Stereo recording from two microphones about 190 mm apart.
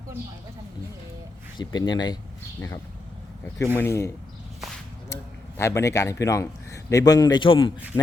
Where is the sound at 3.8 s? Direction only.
15° left (ahead or behind).